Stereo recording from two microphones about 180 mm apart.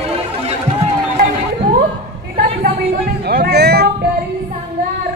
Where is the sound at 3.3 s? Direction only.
60° right (ahead or behind).